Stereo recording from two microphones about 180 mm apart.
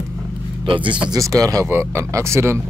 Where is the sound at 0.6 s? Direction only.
30° right (ahead or behind).